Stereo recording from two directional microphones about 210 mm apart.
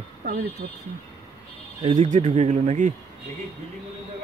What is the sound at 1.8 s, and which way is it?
Speech, 35° right (ahead or behind).